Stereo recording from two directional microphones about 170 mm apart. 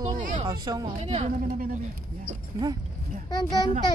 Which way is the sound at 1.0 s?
40° right (ahead or behind).